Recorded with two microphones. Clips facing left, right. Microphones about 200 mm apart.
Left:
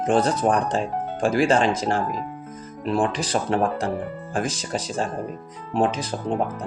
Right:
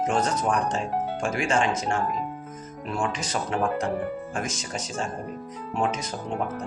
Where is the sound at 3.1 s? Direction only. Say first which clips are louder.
Left 5 dB; 30° left (ahead or behind).